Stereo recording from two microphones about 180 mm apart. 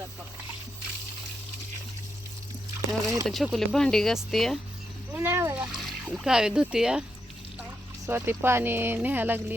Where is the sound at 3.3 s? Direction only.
Centre (ahead or behind).